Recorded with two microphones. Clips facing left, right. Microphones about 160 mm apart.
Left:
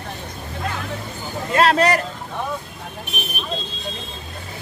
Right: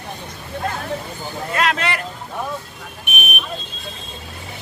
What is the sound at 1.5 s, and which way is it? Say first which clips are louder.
Speech: left 6 dB; 35° left (ahead or behind).